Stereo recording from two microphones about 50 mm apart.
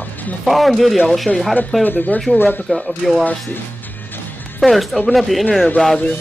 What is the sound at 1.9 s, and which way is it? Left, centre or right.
Speech, left.